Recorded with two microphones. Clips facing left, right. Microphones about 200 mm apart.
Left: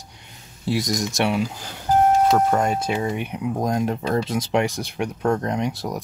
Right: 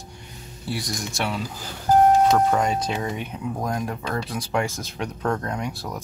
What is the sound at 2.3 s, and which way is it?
Speech, 5° left (ahead or behind).